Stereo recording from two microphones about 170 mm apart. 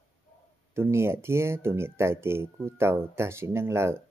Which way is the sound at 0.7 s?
15° right (ahead or behind).